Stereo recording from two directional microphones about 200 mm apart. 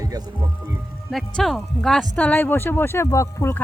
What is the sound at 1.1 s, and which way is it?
Speech, centre (ahead or behind).